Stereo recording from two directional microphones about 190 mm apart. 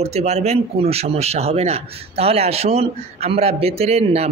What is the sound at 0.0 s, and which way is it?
Speech, 35° right (ahead or behind).